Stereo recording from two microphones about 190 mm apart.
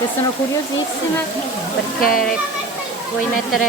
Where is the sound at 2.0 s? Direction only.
50° left (ahead or behind).